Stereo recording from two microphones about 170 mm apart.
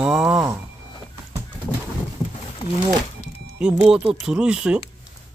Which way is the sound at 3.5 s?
5° right (ahead or behind).